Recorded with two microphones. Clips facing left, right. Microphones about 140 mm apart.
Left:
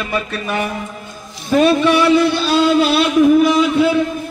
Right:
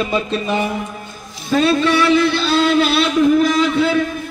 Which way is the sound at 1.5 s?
15° left (ahead or behind).